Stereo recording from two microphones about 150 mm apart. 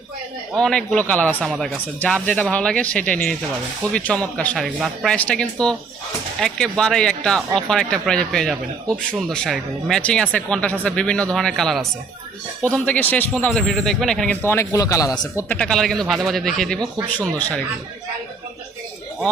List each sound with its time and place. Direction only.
0.5 s speech: 5° left (ahead or behind)
14.4 s speech: 15° left (ahead or behind)
15.4 s speech: 5° left (ahead or behind)